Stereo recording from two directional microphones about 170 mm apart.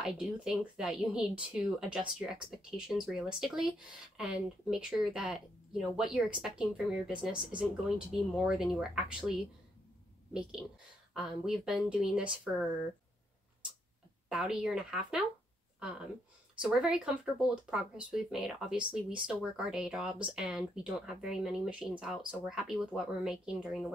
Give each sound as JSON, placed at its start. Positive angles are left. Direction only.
{"t": 0.0, "sound": "speech", "side_deg": -5}
{"t": 11.1, "sound": "speech", "side_deg": 0}
{"t": 14.3, "sound": "speech", "side_deg": -5}
{"t": 16.6, "sound": "speech", "side_deg": -5}